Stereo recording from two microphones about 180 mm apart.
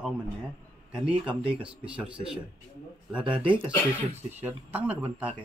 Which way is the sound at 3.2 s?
30° right (ahead or behind).